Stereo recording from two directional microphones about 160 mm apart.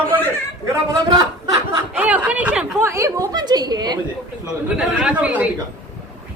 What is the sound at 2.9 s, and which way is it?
A woman's voice, 20° right (ahead or behind).